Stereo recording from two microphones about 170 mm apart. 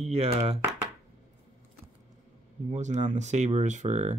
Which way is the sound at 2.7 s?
45° right (ahead or behind).